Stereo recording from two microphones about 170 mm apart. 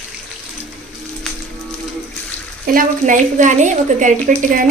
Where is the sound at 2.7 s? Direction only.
50° right (ahead or behind).